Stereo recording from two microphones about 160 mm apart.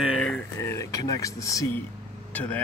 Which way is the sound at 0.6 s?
20° left (ahead or behind).